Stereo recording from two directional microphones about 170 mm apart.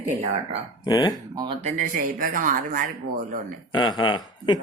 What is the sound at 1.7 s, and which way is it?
Speech, 55° right (ahead or behind).